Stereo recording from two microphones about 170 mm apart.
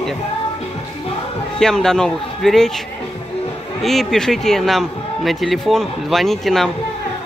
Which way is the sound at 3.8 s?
Centre (ahead or behind).